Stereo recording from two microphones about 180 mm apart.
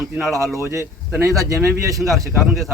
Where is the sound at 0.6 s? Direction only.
15° right (ahead or behind).